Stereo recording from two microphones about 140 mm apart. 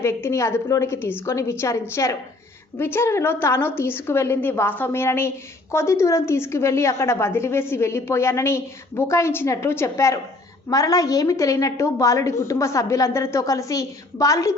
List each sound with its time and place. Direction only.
0.0 s a woman's voice: 20° left (ahead or behind)